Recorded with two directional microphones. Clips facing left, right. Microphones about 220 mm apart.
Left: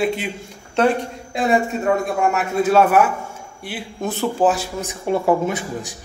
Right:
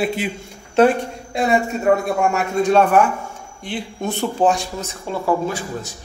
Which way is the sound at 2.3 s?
5° left (ahead or behind).